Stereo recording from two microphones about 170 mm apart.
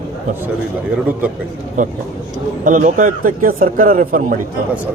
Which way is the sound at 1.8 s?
50° right (ahead or behind).